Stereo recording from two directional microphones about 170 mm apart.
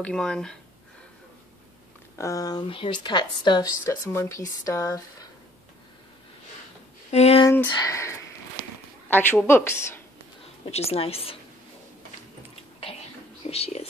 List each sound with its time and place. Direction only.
0.0 s speech: 5° left (ahead or behind)
2.1 s speech: 20° left (ahead or behind)
7.1 s speech: 40° left (ahead or behind)
7.4 s a woman's voice: 20° left (ahead or behind)
10.6 s a woman's voice: 35° left (ahead or behind)
12.9 s whispering: 35° left (ahead or behind)
13.4 s speech: 35° left (ahead or behind)